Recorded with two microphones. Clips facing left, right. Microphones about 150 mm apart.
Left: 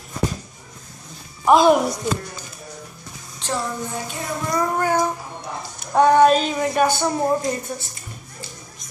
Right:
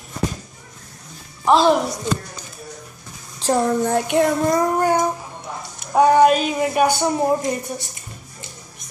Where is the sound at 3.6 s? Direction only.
70° right (ahead or behind).